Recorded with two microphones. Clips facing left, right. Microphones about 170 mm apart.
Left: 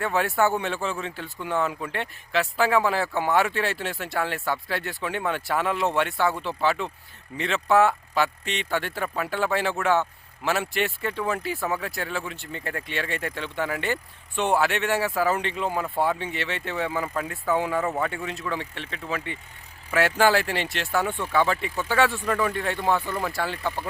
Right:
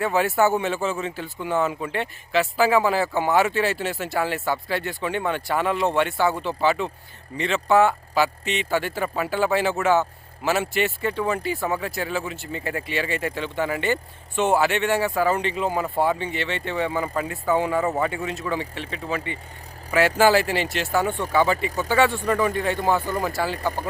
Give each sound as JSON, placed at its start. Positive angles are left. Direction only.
{"t": 0.0, "sound": "speech", "side_deg": -5}